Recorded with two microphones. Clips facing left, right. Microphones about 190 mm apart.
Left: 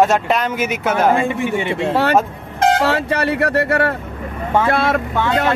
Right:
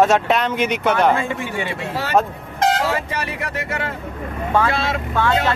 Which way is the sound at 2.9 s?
70° left (ahead or behind).